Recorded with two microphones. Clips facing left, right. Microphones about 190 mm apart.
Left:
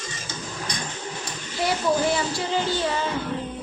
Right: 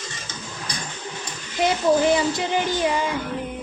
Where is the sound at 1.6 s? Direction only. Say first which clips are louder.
Right 4 dB; 20° right (ahead or behind).